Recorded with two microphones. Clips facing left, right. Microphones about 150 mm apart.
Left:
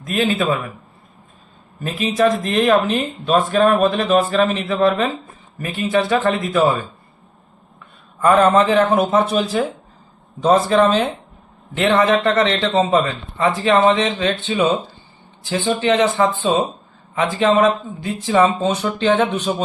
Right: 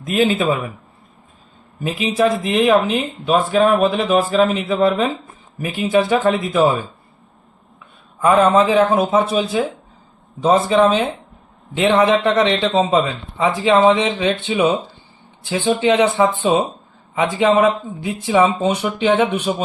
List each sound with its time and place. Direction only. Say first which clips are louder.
0.0 s speech: right 2 dB; 15° right (ahead or behind)
1.8 s speech: even; 10° right (ahead or behind)
8.2 s a man's voice: even; 5° right (ahead or behind)